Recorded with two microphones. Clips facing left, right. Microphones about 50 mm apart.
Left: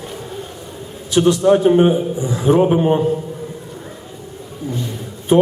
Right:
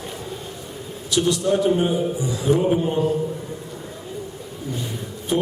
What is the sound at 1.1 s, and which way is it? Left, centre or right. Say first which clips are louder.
A man's voice: left 7 dB; left.